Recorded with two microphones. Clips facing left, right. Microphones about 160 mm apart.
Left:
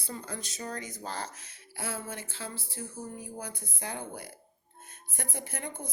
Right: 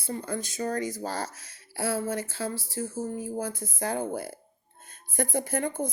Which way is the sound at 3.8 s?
45° right (ahead or behind).